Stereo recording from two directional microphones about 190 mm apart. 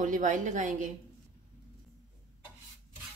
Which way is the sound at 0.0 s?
40° right (ahead or behind).